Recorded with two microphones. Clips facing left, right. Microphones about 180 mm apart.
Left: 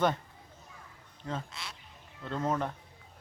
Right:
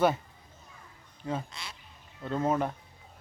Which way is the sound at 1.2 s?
10° right (ahead or behind).